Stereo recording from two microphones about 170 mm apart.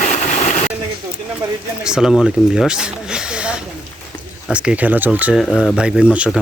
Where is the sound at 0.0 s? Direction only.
45° left (ahead or behind).